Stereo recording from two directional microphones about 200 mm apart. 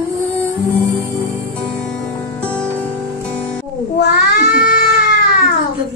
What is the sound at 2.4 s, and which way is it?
Music, 5° left (ahead or behind).